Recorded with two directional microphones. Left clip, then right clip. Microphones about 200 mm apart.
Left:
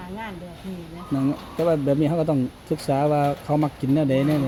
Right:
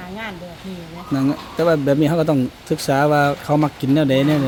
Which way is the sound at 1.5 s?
15° right (ahead or behind).